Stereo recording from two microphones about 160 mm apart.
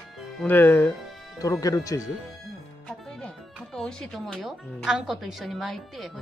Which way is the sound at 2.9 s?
5° left (ahead or behind).